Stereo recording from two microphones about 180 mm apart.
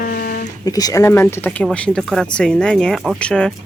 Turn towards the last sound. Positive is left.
turn(degrees=5)  # may be behind; listen again after turning